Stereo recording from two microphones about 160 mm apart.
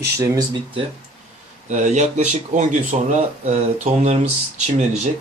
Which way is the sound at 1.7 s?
45° right (ahead or behind).